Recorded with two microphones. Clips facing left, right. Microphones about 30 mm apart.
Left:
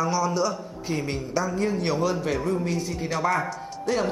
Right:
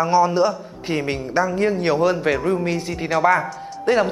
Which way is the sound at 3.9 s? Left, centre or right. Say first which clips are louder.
Right 8 dB; right.